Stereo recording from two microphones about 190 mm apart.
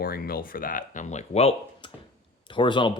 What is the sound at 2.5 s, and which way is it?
Speech, 25° left (ahead or behind).